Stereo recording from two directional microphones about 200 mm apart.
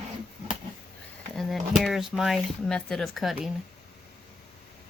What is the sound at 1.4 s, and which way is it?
Speech, centre (ahead or behind).